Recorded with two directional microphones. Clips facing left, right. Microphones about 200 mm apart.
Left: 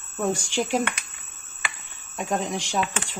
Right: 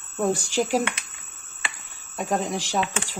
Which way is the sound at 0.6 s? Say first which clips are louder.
Right 1 dB; 5° right (ahead or behind).